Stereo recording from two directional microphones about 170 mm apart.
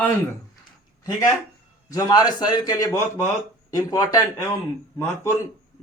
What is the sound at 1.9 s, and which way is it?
A man's voice, 25° left (ahead or behind).